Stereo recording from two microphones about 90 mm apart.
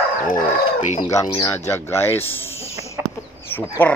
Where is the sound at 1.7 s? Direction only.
30° left (ahead or behind).